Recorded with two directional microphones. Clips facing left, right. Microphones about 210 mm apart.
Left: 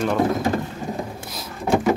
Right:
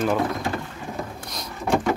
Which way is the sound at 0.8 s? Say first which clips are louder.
Left 5 dB; 45° left (ahead or behind).